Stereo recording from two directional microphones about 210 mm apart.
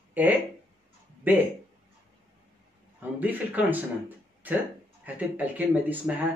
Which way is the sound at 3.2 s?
10° right (ahead or behind).